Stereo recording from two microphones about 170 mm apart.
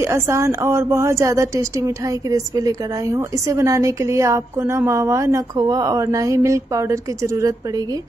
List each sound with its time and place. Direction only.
0.0 s a woman's voice: 15° right (ahead or behind)